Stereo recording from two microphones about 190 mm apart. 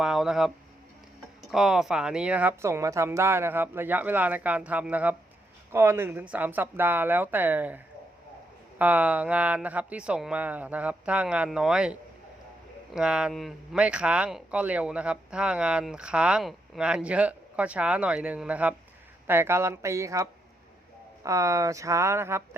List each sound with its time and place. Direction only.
0.0 s speech: 5° right (ahead or behind)
8.8 s speech: 10° right (ahead or behind)
21.2 s speech: 15° right (ahead or behind)